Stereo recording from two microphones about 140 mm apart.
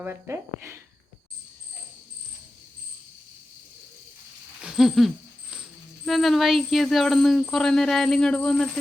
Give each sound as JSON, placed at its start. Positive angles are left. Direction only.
{"t": 0.0, "sound": "speech", "side_deg": -15}
{"t": 4.6, "sound": "a sound", "side_deg": -5}
{"t": 6.1, "sound": "speech", "side_deg": 0}